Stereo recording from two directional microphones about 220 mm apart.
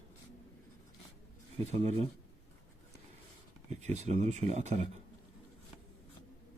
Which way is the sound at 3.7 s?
30° right (ahead or behind).